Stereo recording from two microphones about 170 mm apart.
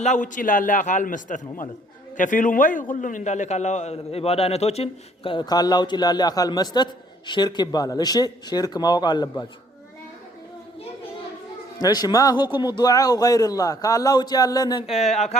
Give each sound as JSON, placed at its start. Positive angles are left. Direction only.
{"t": 0.0, "sound": "a man's voice", "side_deg": 45}
{"t": 11.8, "sound": "speech", "side_deg": 25}
{"t": 14.8, "sound": "a man's voice", "side_deg": 40}